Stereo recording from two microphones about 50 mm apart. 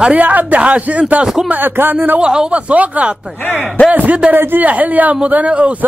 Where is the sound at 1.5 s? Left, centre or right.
Right.